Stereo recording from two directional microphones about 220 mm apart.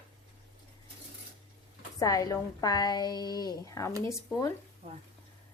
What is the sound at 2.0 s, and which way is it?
A woman's voice, 15° left (ahead or behind).